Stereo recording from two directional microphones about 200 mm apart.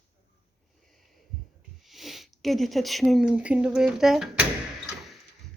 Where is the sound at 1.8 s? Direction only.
Centre (ahead or behind).